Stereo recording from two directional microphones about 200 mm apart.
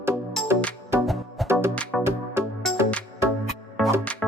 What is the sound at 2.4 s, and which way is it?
Music, 10° right (ahead or behind).